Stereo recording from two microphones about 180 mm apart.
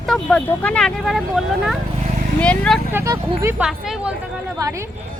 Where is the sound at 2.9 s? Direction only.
15° right (ahead or behind).